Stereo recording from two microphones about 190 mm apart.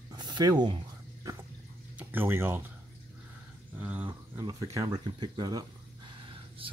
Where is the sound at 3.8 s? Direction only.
10° right (ahead or behind).